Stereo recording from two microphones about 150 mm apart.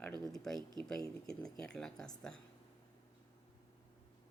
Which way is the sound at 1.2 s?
5° left (ahead or behind).